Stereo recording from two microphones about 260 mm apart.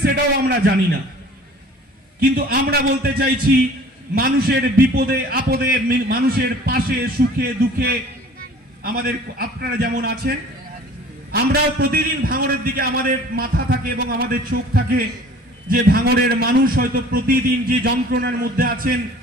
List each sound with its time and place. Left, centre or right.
0.0 s a man's voice: right
2.3 s a man's voice: right